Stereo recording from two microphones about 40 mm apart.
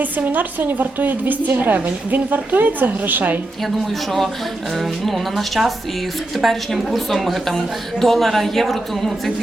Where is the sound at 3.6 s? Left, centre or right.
Centre.